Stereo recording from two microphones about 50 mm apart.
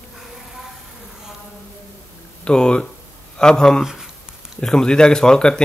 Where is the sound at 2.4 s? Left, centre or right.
Centre.